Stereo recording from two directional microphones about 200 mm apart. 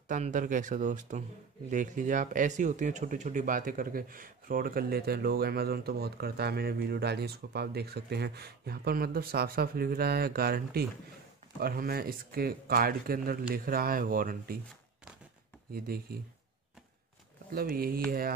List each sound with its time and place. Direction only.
0.1 s speech: 40° right (ahead or behind)
15.7 s speech: 50° right (ahead or behind)
17.5 s speech: 50° right (ahead or behind)